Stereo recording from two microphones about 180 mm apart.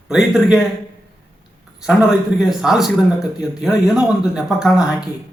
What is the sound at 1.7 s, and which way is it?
Speech, 5° right (ahead or behind).